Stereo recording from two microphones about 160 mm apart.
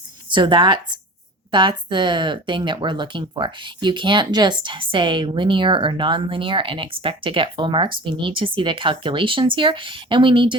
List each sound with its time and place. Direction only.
0.3 s a woman's voice: 30° right (ahead or behind)